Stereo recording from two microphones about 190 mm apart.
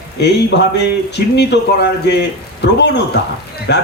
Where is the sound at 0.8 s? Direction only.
65° left (ahead or behind).